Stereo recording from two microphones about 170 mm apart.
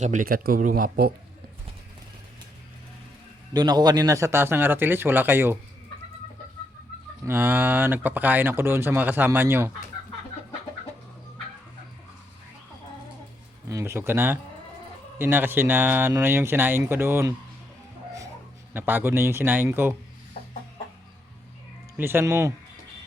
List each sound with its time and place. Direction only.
0.0 s speech: 50° right (ahead or behind)
3.5 s speech: 25° right (ahead or behind)
7.3 s speech: 10° right (ahead or behind)
13.7 s speech: 15° right (ahead or behind)
18.7 s speech: 10° right (ahead or behind)
21.9 s speech: 15° right (ahead or behind)